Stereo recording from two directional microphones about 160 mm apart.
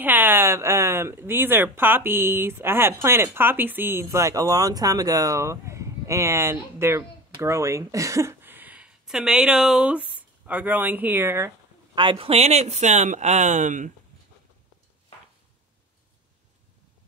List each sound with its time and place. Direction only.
0.0 s speech: 10° right (ahead or behind)
11.9 s speech: 30° right (ahead or behind); by 13.9 s 50° right (ahead or behind)